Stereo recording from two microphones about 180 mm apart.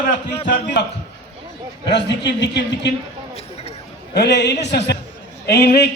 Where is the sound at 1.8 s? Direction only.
75° left (ahead or behind).